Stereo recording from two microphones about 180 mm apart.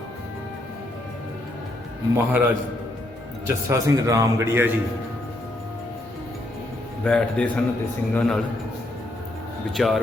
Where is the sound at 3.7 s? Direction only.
20° right (ahead or behind).